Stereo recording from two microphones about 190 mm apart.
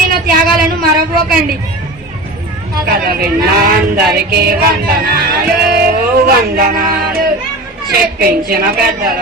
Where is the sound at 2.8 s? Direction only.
55° right (ahead or behind).